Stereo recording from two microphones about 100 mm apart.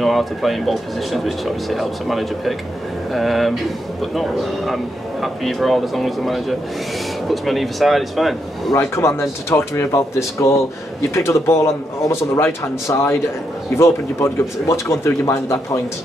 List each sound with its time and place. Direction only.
0.0 s speech: centre (ahead or behind)
8.7 s speech: 30° left (ahead or behind)